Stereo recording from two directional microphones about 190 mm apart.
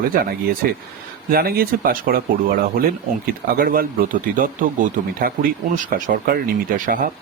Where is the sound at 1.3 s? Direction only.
55° right (ahead or behind).